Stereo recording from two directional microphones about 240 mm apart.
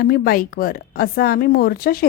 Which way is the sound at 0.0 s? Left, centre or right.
Left.